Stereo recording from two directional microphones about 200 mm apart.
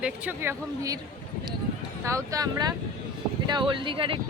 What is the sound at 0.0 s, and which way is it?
Speech, 10° right (ahead or behind).